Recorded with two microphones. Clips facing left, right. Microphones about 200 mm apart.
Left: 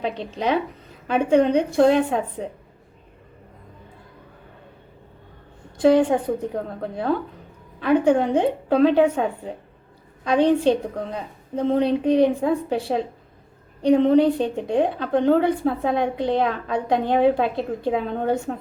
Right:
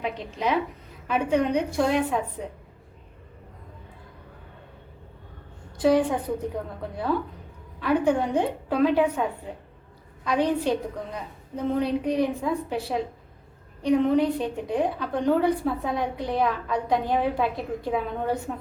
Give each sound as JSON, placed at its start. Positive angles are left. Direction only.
{"t": 0.0, "sound": "a woman's voice", "side_deg": 30}
{"t": 5.8, "sound": "a woman's voice", "side_deg": 25}
{"t": 7.8, "sound": "a woman's voice", "side_deg": 25}
{"t": 10.2, "sound": "a woman's voice", "side_deg": 25}